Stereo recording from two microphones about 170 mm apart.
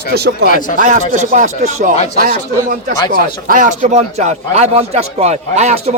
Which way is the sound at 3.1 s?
55° right (ahead or behind).